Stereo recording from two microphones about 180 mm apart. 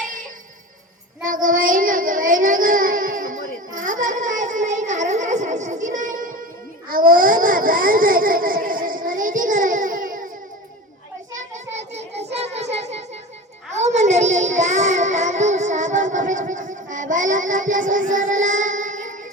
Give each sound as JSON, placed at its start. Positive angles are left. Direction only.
{"t": 1.2, "sound": "child singing", "side_deg": -45}
{"t": 6.8, "sound": "a sound", "side_deg": -50}
{"t": 12.3, "sound": "music", "side_deg": -35}
{"t": 13.7, "sound": "child singing", "side_deg": -40}